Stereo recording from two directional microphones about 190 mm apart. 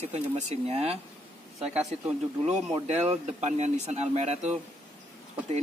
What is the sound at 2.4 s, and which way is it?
Speech, 35° right (ahead or behind).